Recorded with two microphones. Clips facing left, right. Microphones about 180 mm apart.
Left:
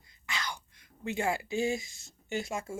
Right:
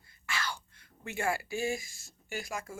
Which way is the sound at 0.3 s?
15° left (ahead or behind).